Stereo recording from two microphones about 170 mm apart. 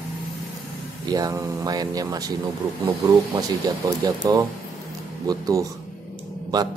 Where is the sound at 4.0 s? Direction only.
20° right (ahead or behind).